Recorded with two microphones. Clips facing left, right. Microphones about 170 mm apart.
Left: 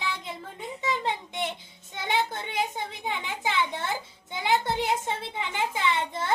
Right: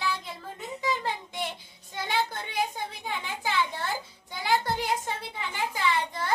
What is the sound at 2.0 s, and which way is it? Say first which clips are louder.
A child's voice: left 1 dB; 20° left (ahead or behind).